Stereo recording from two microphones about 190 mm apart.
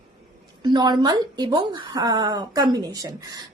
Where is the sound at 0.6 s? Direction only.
20° right (ahead or behind).